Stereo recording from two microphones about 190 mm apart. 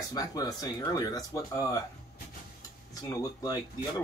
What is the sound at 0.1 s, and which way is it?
Speech, 20° left (ahead or behind).